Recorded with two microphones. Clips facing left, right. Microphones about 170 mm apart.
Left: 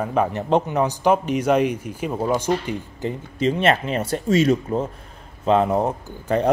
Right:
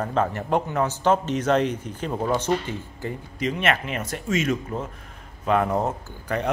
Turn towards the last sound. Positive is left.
turn(degrees=15)  # may be behind; listen again after turning